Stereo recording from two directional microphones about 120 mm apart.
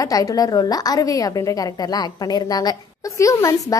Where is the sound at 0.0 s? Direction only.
30° left (ahead or behind).